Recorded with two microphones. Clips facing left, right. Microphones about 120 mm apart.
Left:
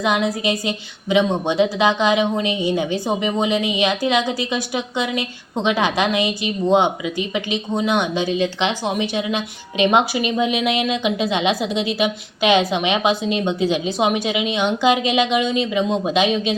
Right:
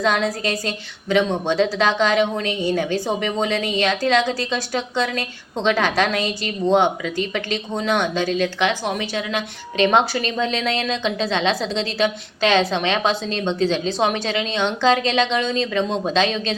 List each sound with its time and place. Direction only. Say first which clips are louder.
0.0 s a woman's voice: left 1 dB; 15° left (ahead or behind)